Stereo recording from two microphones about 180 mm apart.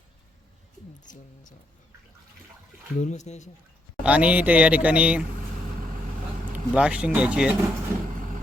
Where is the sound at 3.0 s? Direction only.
40° left (ahead or behind).